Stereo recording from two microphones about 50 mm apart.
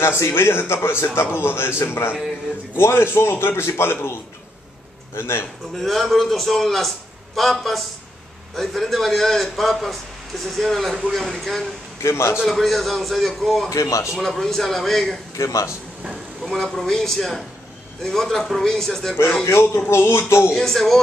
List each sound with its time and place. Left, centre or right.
0.2 s a man's voice: left
5.8 s a man's voice: centre
12.0 s a man's voice: left
12.4 s a man's voice: centre
13.7 s speech: left
14.1 s a man's voice: centre
15.3 s speech: left
16.4 s a man's voice: centre
19.4 s a man's voice: left
20.5 s a man's voice: centre